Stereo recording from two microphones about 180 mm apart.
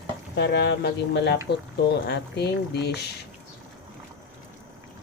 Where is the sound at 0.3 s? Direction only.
75° left (ahead or behind).